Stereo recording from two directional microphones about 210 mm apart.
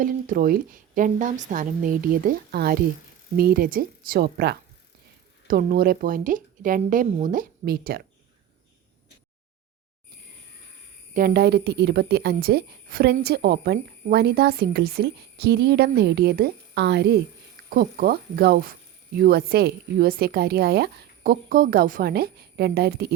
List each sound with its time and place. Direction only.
0.0 s a woman's voice: 40° right (ahead or behind)
11.1 s speech: 45° right (ahead or behind)